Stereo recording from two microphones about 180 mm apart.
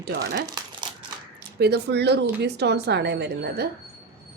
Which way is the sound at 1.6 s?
65° right (ahead or behind).